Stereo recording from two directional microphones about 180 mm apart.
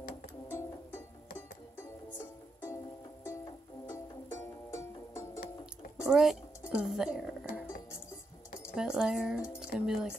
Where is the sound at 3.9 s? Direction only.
15° left (ahead or behind).